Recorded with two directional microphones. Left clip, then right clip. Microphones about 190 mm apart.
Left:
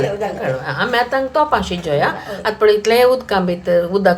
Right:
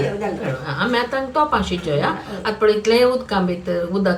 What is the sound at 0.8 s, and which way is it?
A woman's voice, 45° left (ahead or behind).